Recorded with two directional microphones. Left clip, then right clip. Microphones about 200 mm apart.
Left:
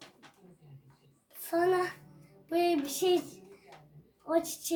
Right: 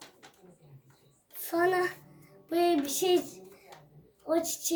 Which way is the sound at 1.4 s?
15° left (ahead or behind).